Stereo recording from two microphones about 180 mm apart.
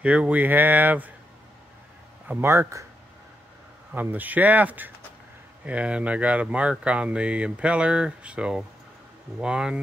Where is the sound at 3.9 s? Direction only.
10° right (ahead or behind).